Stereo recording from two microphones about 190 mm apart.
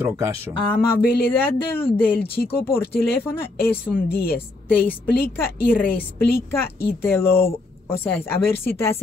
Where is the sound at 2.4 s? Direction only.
50° left (ahead or behind).